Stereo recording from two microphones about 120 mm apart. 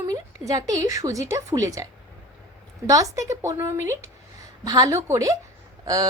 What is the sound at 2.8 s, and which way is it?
A woman's voice, 25° right (ahead or behind).